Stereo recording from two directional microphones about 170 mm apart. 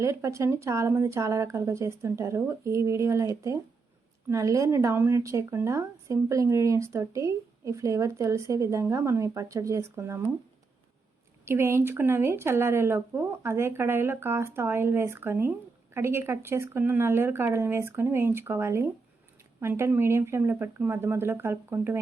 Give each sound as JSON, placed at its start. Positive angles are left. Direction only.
{"t": 0.0, "sound": "speech", "side_deg": -15}
{"t": 11.4, "sound": "speech", "side_deg": -15}